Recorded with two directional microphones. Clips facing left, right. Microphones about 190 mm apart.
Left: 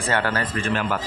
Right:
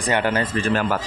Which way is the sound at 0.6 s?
35° right (ahead or behind).